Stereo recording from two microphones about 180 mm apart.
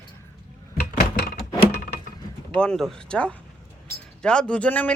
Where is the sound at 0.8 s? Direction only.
65° left (ahead or behind).